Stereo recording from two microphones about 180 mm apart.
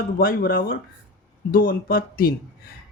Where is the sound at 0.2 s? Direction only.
50° left (ahead or behind).